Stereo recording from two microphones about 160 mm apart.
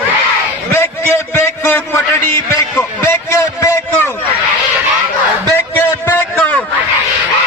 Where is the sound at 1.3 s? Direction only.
15° left (ahead or behind).